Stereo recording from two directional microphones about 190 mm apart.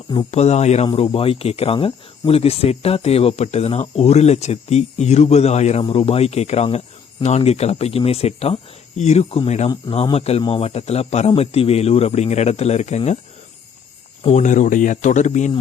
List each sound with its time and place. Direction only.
0.3 s speech: 35° left (ahead or behind)
14.3 s speech: 40° left (ahead or behind)